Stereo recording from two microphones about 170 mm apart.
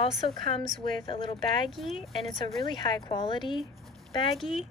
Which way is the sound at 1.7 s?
Centre (ahead or behind).